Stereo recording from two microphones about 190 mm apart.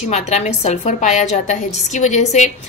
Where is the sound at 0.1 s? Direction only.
35° left (ahead or behind).